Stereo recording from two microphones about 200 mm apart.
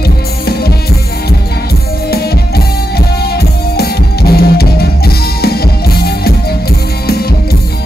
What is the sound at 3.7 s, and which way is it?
Music, 50° left (ahead or behind).